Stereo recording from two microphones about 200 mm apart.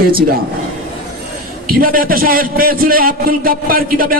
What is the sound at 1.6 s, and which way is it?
A man's voice, 45° right (ahead or behind).